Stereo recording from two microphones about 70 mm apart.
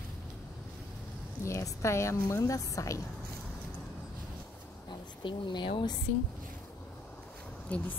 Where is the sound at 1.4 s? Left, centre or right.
Left.